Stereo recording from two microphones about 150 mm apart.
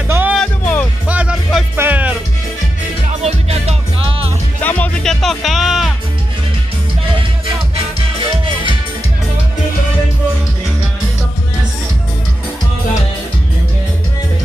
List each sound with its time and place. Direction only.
0.1 s music: 10° right (ahead or behind)
0.4 s music: 10° left (ahead or behind)
1.0 s music: 10° right (ahead or behind)
3.1 s music: 45° right (ahead or behind)
4.6 s music: 10° left (ahead or behind)
7.7 s music: 35° right (ahead or behind)